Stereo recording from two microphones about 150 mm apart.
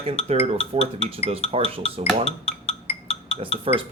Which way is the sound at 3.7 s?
40° right (ahead or behind).